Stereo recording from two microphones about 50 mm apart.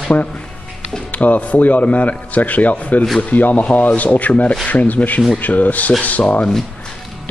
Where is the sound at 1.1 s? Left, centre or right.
Left.